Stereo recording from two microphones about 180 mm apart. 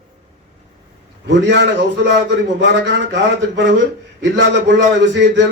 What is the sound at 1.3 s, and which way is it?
A man's voice, 75° right (ahead or behind).